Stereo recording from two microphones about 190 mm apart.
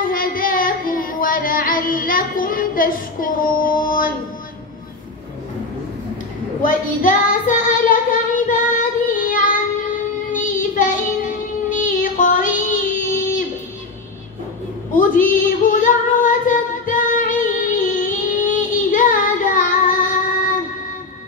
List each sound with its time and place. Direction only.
0.0 s carnatic music: 45° left (ahead or behind)
6.6 s child singing: 45° left (ahead or behind)
15.0 s female singing: 45° left (ahead or behind)